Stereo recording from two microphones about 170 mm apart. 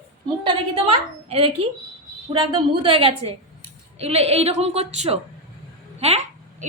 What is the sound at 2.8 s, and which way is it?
A woman's voice, 35° right (ahead or behind).